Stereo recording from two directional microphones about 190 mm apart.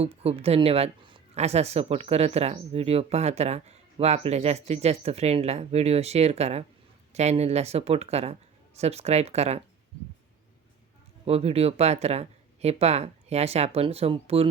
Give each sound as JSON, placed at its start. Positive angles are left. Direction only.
{"t": 0.0, "sound": "speech", "side_deg": -30}
{"t": 11.3, "sound": "speech", "side_deg": -30}